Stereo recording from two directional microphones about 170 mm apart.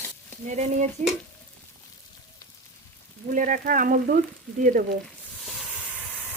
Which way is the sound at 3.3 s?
50° right (ahead or behind).